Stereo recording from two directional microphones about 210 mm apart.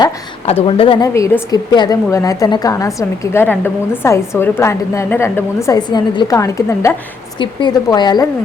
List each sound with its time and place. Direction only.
0.0 s a woman's voice: 25° left (ahead or behind)